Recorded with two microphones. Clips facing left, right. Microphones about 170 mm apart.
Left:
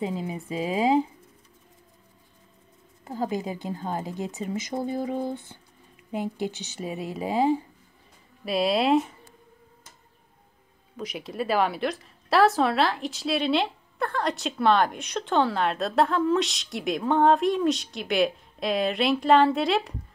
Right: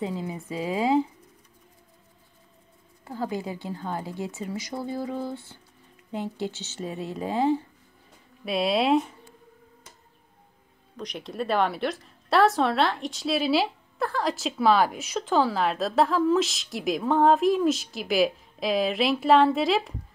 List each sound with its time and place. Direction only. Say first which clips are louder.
0.0 s a woman's voice: left 1 dB; 15° left (ahead or behind)
3.1 s a woman's voice: left 2 dB; 15° left (ahead or behind)
8.5 s a woman's voice: even; centre (ahead or behind)
11.0 s a woman's voice: left 1 dB; 5° left (ahead or behind)